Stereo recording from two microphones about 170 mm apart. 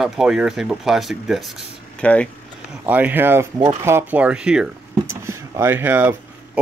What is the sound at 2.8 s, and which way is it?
Speech, 10° right (ahead or behind).